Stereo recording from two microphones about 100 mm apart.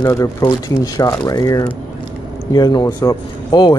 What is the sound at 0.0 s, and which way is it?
Speech, 35° left (ahead or behind).